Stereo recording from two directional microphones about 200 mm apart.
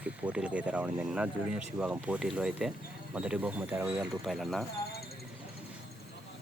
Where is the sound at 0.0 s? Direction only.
5° right (ahead or behind).